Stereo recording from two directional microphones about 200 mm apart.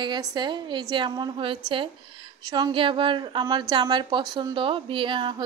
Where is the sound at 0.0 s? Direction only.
20° right (ahead or behind).